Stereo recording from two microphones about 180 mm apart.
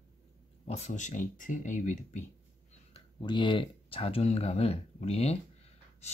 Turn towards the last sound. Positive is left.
turn(degrees=35)  # may be behind; listen again after turning